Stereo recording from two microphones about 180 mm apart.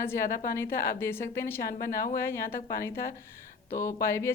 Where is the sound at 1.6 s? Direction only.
55° left (ahead or behind).